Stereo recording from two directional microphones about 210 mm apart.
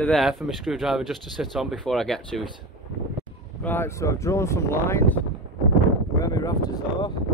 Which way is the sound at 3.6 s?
10° left (ahead or behind).